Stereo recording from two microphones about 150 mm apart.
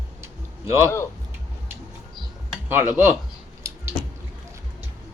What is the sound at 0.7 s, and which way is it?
Speech, 15° right (ahead or behind).